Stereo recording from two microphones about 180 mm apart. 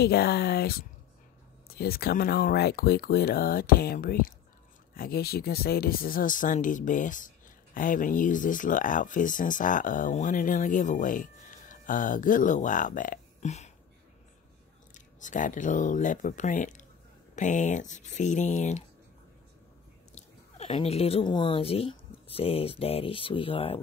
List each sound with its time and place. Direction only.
0.0 s speech: 60° left (ahead or behind); by 13.7 s 40° left (ahead or behind)
15.0 s speech: 45° left (ahead or behind)
20.1 s speech: 40° left (ahead or behind)